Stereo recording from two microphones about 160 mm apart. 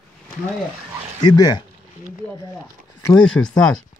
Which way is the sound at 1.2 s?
25° left (ahead or behind).